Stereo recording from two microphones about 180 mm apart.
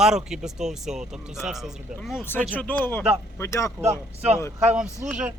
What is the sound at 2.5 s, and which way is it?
Speech, 10° left (ahead or behind).